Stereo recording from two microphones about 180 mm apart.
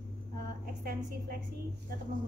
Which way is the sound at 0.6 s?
55° right (ahead or behind).